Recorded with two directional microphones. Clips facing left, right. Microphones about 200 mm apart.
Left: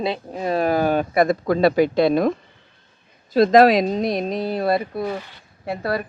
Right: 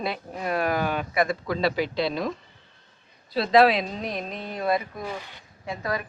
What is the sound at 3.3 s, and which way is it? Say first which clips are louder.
Speech: left 6 dB; 45° left (ahead or behind).